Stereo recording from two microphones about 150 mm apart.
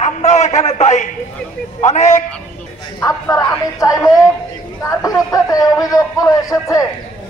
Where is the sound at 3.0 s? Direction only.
25° left (ahead or behind).